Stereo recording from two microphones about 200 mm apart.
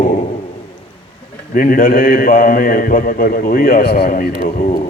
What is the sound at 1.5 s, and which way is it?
A man's voice, 45° left (ahead or behind).